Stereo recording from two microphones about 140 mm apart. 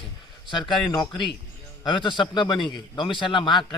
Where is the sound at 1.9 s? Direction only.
35° left (ahead or behind).